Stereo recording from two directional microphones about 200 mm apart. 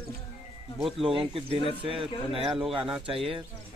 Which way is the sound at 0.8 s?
Centre (ahead or behind).